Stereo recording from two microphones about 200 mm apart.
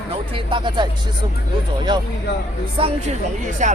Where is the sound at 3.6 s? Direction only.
40° right (ahead or behind).